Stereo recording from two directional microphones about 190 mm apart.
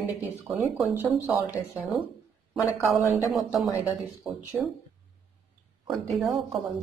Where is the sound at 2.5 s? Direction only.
Centre (ahead or behind).